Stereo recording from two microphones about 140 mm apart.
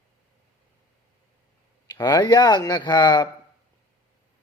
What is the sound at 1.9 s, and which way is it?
Speech, 30° left (ahead or behind).